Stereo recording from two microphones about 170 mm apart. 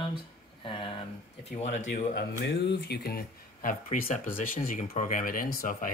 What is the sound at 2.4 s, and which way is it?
Speech, 85° left.